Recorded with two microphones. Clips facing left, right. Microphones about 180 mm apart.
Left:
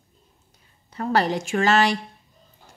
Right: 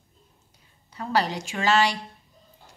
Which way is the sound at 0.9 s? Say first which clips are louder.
Left 4 dB; 50° left (ahead or behind).